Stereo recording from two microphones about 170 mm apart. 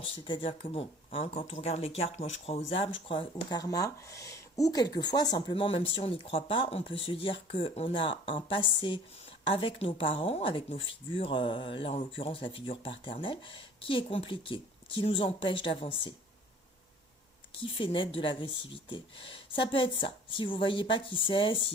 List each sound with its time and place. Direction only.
0.0 s speech: 30° left (ahead or behind)
17.6 s speech: 30° left (ahead or behind)